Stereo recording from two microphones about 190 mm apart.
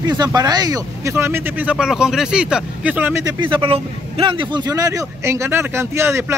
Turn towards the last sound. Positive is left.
turn(degrees=-15)  # may be behind; listen again after turning